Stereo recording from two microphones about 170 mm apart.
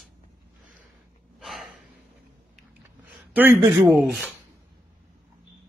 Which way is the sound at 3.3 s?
15° right (ahead or behind).